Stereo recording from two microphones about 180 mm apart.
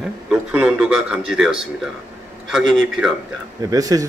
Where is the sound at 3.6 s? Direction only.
20° right (ahead or behind).